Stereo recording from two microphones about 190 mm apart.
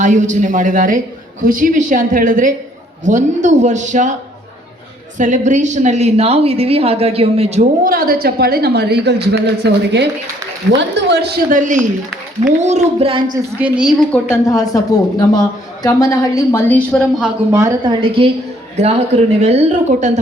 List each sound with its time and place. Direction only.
0.0 s a man's voice: 40° right (ahead or behind)
5.1 s a woman's voice: 40° right (ahead or behind)
13.6 s a woman's voice: 5° right (ahead or behind)
14.4 s a woman's voice: 20° left (ahead or behind); by 17.3 s centre (ahead or behind)
17.5 s a woman's voice: 20° right (ahead or behind); by 20.1 s 40° right (ahead or behind)